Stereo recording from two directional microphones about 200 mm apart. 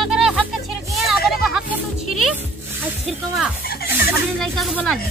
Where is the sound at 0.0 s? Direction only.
Centre (ahead or behind).